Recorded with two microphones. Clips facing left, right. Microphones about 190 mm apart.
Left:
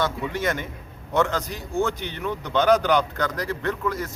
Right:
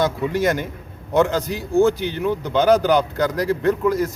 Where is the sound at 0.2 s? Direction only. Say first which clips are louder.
Right 6 dB; 35° right (ahead or behind).